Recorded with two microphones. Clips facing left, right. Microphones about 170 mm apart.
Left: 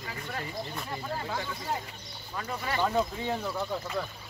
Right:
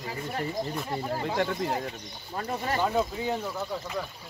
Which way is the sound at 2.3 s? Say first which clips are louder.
Right 3 dB; 40° right (ahead or behind).